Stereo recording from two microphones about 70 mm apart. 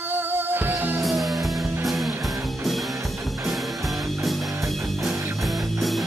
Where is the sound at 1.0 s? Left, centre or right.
Centre.